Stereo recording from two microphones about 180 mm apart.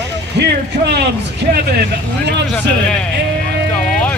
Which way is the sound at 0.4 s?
65° right (ahead or behind).